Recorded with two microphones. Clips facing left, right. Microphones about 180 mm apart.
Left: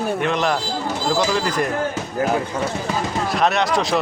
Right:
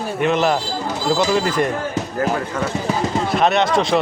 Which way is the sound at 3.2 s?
Centre (ahead or behind).